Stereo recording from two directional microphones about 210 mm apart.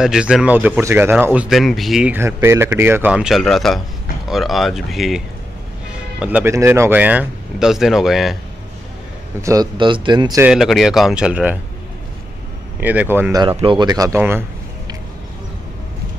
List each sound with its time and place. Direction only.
0.0 s speech: 5° right (ahead or behind)
9.4 s a man's voice: 15° right (ahead or behind)
10.4 s speech: centre (ahead or behind)
12.8 s speech: 10° right (ahead or behind)